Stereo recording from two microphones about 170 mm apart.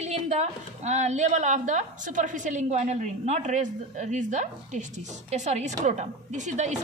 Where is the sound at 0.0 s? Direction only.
40° right (ahead or behind).